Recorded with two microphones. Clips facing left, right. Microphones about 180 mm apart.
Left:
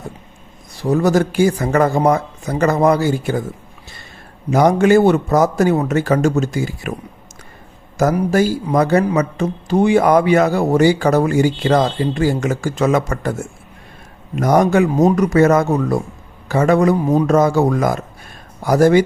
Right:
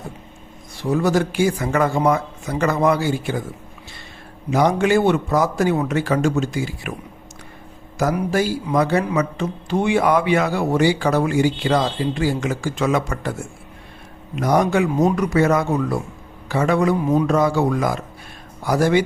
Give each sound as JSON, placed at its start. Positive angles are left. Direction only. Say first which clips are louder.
{"t": 0.8, "sound": "speech", "louder": "left 4 dB", "side_deg": 40}
{"t": 4.5, "sound": "a man's voice", "louder": "left 5 dB", "side_deg": 45}
{"t": 7.9, "sound": "a man's voice", "louder": "left 5 dB", "side_deg": 45}